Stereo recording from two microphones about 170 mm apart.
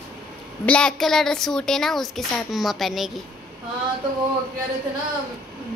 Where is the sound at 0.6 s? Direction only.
5° left (ahead or behind).